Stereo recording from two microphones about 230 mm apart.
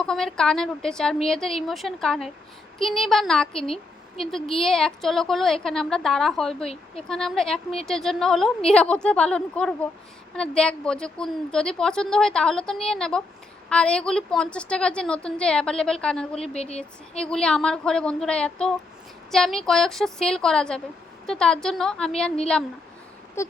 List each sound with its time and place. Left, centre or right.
0.0 s a woman's voice: centre
16.6 s speech: left
17.2 s a woman's voice: centre
23.4 s a sound: centre